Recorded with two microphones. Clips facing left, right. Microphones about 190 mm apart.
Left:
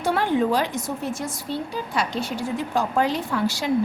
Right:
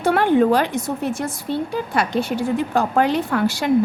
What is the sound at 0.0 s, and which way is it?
A woman's voice, 60° right (ahead or behind).